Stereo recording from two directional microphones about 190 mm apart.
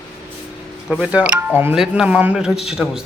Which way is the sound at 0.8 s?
5° right (ahead or behind).